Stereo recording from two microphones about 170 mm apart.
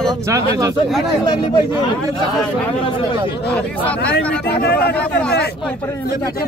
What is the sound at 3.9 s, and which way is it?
Speech, 75° left (ahead or behind).